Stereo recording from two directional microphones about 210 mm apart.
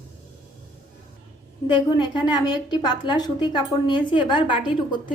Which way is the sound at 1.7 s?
20° left (ahead or behind).